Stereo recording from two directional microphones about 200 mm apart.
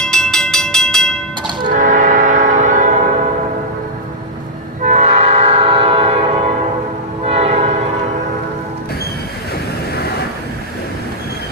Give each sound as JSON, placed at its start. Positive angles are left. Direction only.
{"t": 0.0, "sound": "train", "side_deg": 0}
{"t": 1.7, "sound": "train", "side_deg": -40}
{"t": 4.8, "sound": "train", "side_deg": -35}